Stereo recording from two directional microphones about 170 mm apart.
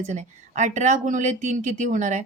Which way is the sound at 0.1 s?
45° right (ahead or behind).